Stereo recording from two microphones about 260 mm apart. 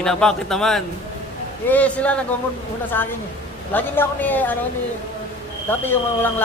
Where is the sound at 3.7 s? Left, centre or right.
Centre.